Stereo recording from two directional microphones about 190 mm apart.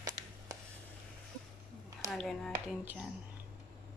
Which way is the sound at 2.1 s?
Centre (ahead or behind).